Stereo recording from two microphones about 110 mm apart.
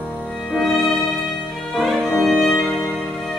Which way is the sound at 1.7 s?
Centre (ahead or behind).